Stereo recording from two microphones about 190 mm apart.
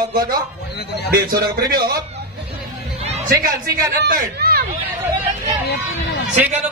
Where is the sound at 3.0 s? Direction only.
35° right (ahead or behind).